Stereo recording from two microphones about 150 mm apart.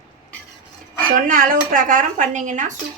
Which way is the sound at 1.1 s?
65° right (ahead or behind).